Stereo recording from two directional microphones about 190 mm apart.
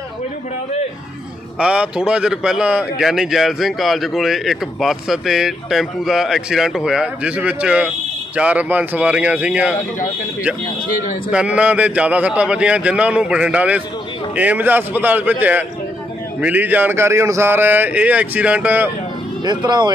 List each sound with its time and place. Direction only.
1.6 s a man's voice: 5° right (ahead or behind)
11.3 s speech: 5° right (ahead or behind)
16.3 s speech: 10° right (ahead or behind)
19.4 s speech: 25° right (ahead or behind)